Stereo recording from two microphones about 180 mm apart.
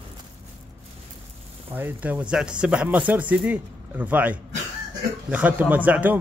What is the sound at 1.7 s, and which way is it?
A man's voice, 10° right (ahead or behind).